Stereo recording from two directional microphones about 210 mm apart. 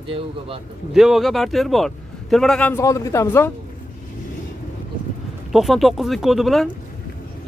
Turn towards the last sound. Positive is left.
turn(degrees=0)  # may be behind; listen again after turning